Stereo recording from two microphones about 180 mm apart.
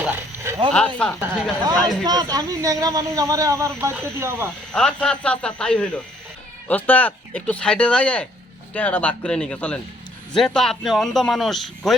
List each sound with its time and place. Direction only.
0.7 s a man's voice: 5° left (ahead or behind)
2.0 s speech: 20° right (ahead or behind)
4.7 s a man's voice: 5° left (ahead or behind)